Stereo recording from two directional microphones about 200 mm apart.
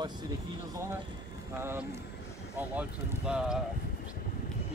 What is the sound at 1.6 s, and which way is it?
Speech, 10° right (ahead or behind).